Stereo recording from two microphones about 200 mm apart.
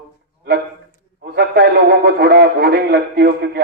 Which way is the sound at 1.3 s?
50° right (ahead or behind).